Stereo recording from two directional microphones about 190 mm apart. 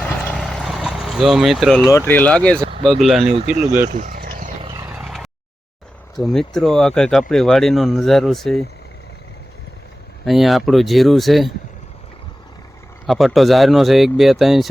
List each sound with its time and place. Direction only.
0.0 s vehicle: 5° left (ahead or behind)
1.9 s speech: 10° left (ahead or behind)
3.8 s vehicle: 40° right (ahead or behind)
4.6 s a sound: 20° right (ahead or behind)
4.9 s a sound: centre (ahead or behind)
6.1 s speech: centre (ahead or behind)
10.2 s speech: centre (ahead or behind)
13.1 s speech: centre (ahead or behind)